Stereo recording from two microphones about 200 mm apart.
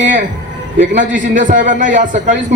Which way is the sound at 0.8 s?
40° right (ahead or behind).